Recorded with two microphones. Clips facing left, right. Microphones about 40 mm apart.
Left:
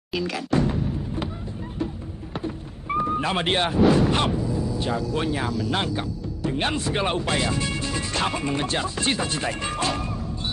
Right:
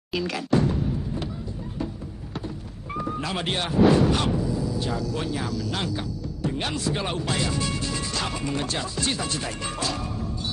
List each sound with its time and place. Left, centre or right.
0.1 s speech: centre
0.7 s music: left
2.3 s a sound: left
4.7 s speech: left